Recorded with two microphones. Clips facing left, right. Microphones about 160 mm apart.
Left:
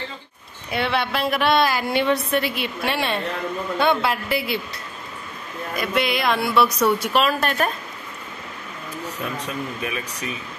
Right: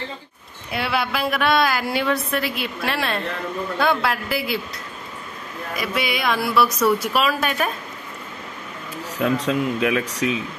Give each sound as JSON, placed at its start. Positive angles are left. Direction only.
{"t": 0.7, "sound": "a woman's voice", "side_deg": 0}
{"t": 5.8, "sound": "a woman's voice", "side_deg": 0}
{"t": 9.2, "sound": "speech", "side_deg": -90}